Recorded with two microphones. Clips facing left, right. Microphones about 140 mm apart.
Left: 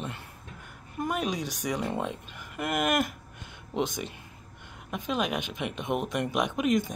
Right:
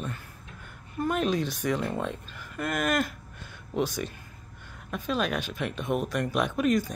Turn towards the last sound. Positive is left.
turn(degrees=20)  # may be behind; listen again after turning